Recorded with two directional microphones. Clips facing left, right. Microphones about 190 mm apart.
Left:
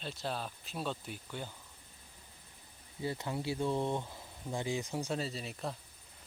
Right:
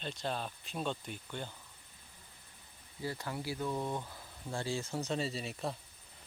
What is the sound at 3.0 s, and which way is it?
Speech, 20° left (ahead or behind).